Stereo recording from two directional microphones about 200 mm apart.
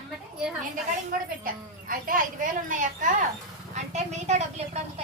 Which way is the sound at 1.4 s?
45° right (ahead or behind).